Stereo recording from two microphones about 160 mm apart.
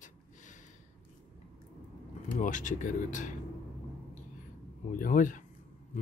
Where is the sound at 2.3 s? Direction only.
50° left (ahead or behind).